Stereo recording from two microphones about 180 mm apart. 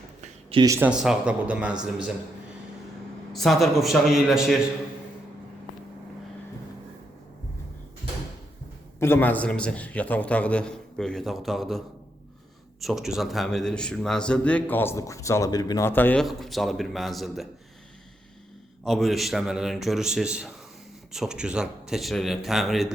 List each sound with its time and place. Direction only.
0.6 s speech: 15° right (ahead or behind)
0.9 s speech: 5° right (ahead or behind)
3.3 s speech: centre (ahead or behind)
9.0 s speech: 10° left (ahead or behind)
12.8 s speech: centre (ahead or behind)
16.2 s speech: centre (ahead or behind)
18.9 s speech: centre (ahead or behind)